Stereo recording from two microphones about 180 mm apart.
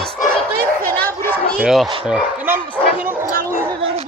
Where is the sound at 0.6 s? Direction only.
55° right (ahead or behind).